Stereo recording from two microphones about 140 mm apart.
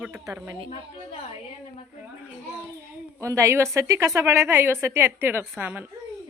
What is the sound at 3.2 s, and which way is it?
A woman's voice, 20° right (ahead or behind).